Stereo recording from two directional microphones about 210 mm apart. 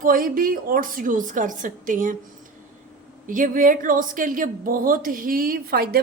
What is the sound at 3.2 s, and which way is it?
A woman's voice, 40° right (ahead or behind).